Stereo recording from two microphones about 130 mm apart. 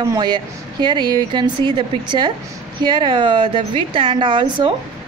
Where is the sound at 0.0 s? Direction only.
30° right (ahead or behind).